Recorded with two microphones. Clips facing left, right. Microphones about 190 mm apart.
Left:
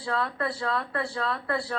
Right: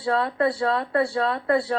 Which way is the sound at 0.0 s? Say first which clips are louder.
Right 7 dB; 25° right (ahead or behind).